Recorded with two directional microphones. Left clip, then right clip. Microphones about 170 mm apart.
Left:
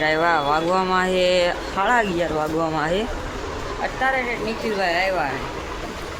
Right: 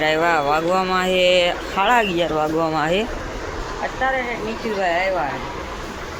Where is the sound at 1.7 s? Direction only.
10° right (ahead or behind).